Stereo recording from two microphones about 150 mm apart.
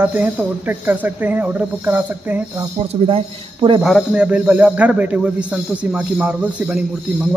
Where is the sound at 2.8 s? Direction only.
40° right (ahead or behind).